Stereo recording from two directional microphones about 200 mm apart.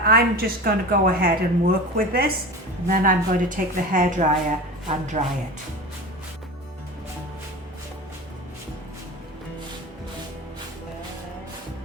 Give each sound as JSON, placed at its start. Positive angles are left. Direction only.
{"t": 0.0, "sound": "a woman's voice", "side_deg": -50}